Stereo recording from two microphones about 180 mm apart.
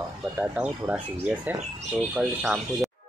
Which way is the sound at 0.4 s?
10° right (ahead or behind).